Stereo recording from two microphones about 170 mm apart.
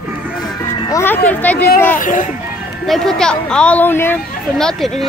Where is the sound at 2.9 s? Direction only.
5° left (ahead or behind).